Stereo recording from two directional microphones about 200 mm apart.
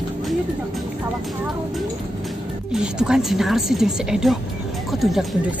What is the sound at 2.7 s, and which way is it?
Speech, 5° right (ahead or behind).